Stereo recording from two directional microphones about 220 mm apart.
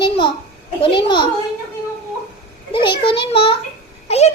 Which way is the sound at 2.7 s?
20° left (ahead or behind).